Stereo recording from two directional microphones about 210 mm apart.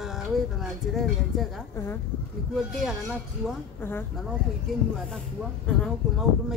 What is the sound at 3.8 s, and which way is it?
Speech, 10° left (ahead or behind).